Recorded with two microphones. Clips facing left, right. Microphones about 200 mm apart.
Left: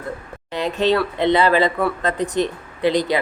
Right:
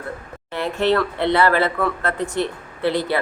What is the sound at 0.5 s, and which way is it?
Speech, 15° left (ahead or behind).